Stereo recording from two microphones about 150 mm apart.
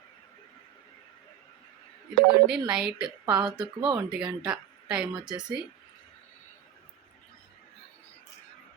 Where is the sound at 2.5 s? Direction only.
5° right (ahead or behind).